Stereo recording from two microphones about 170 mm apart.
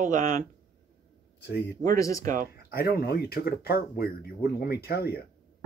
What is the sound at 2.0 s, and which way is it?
Speech, 20° left (ahead or behind).